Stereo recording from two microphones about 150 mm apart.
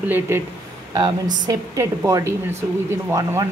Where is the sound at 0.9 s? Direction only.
25° right (ahead or behind).